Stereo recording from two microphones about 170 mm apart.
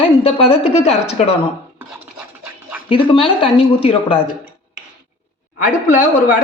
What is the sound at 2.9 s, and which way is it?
Speech, 30° left (ahead or behind).